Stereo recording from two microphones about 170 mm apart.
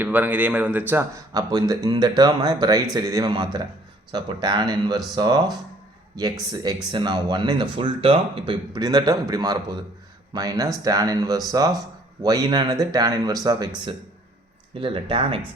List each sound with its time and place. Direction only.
0.0 s a man's voice: 10° right (ahead or behind)
14.8 s speech: 30° right (ahead or behind)